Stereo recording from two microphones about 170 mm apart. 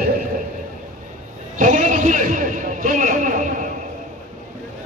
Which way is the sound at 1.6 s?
45° right (ahead or behind).